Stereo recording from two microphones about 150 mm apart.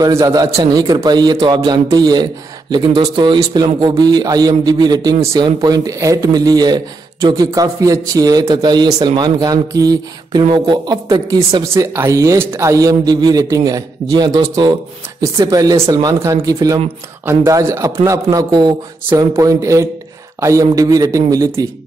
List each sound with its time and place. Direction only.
0.0 s a man's voice: 25° right (ahead or behind)